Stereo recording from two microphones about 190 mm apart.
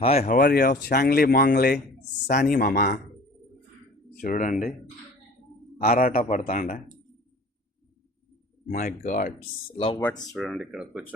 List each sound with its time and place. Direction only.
0.0 s speech: 35° left (ahead or behind)
0.3 s speech: 55° left (ahead or behind)
4.2 s speech: 45° left (ahead or behind)
5.7 s a man's voice: 50° left (ahead or behind)
8.7 s speech: 45° left (ahead or behind)
10.3 s speech: centre (ahead or behind)